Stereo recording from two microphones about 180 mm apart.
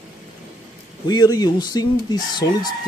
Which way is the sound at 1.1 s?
20° left (ahead or behind).